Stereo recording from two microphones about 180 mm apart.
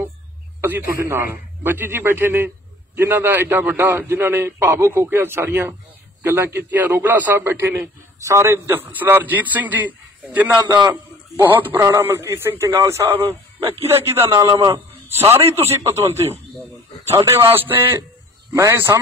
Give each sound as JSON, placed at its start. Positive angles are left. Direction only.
{"t": 0.6, "sound": "a man's voice", "side_deg": -10}
{"t": 10.6, "sound": "a man's voice", "side_deg": -20}